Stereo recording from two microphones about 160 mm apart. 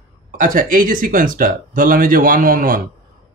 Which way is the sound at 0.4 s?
55° right (ahead or behind).